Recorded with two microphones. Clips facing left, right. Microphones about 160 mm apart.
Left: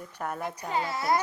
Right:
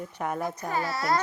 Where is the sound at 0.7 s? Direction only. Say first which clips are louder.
Left 1 dB; 20° left (ahead or behind).